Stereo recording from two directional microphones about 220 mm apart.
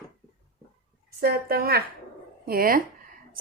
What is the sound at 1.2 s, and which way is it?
A woman's voice, 45° right (ahead or behind).